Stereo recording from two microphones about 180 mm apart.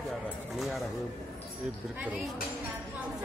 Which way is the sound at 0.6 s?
Centre (ahead or behind).